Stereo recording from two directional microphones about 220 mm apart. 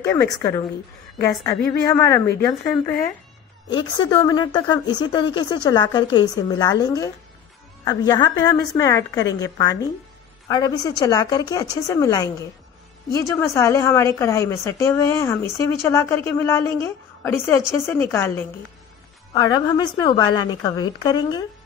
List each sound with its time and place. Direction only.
0.0 s a woman's voice: 15° left (ahead or behind)
3.7 s a woman's voice: 20° left (ahead or behind)